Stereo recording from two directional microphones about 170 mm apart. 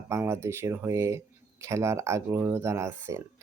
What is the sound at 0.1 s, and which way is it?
Speech, 15° right (ahead or behind).